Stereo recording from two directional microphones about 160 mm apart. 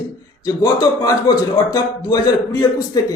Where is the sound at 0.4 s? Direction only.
20° left (ahead or behind).